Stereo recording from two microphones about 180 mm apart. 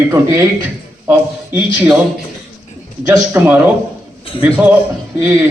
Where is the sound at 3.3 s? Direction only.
10° right (ahead or behind).